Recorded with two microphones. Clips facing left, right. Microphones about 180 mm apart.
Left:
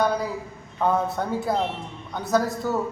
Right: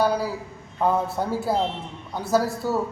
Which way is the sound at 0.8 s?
5° right (ahead or behind).